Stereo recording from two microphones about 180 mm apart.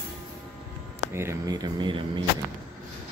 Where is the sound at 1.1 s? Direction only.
15° right (ahead or behind).